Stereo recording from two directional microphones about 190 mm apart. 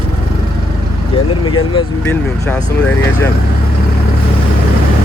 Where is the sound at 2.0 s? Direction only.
10° left (ahead or behind).